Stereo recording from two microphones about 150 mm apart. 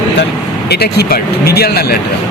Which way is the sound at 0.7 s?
90° left.